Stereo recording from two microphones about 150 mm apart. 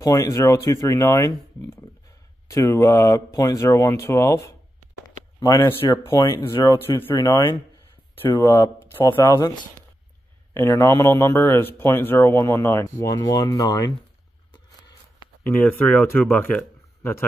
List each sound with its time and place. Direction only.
0.0 s speech: 25° left (ahead or behind)
10.5 s speech: 15° left (ahead or behind)
15.5 s speech: 10° left (ahead or behind)